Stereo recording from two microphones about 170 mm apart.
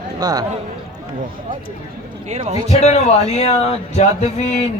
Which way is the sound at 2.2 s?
40° right (ahead or behind).